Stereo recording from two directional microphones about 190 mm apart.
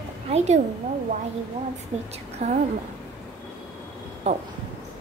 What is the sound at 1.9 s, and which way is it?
Speech, 35° right (ahead or behind).